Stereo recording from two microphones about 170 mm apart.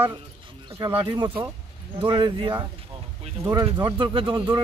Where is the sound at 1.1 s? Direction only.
15° right (ahead or behind).